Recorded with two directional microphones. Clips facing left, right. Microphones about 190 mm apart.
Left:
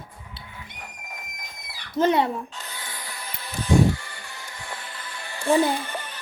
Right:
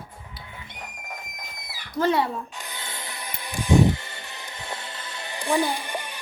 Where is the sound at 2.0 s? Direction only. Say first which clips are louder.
Left 2 dB; 20° left (ahead or behind).